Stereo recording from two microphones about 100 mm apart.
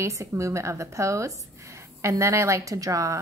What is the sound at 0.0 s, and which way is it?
A woman's voice, 30° right (ahead or behind).